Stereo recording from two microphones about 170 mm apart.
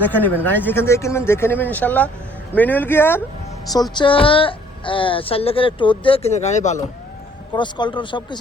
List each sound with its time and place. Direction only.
0.0 s speech: 10° left (ahead or behind)
3.9 s speech: 30° left (ahead or behind)
7.5 s speech: 25° left (ahead or behind)